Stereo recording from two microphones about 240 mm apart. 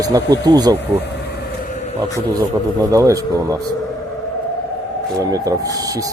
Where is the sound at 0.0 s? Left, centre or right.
Centre.